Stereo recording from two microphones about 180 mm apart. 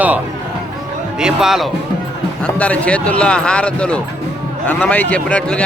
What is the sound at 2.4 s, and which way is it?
Speech, 10° left (ahead or behind).